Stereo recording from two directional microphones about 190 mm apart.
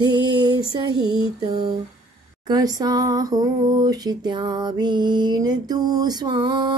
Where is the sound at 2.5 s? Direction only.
20° right (ahead or behind).